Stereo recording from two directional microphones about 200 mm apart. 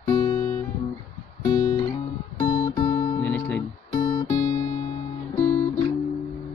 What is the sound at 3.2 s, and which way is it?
Guitar, 10° left (ahead or behind).